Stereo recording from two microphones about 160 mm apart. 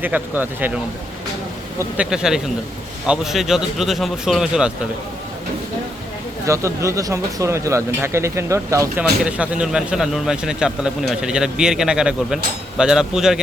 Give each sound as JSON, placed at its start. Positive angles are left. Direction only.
{"t": 0.0, "sound": "speech", "side_deg": -10}
{"t": 1.8, "sound": "speech", "side_deg": -5}
{"t": 6.4, "sound": "speech", "side_deg": -20}
{"t": 9.2, "sound": "speech", "side_deg": -5}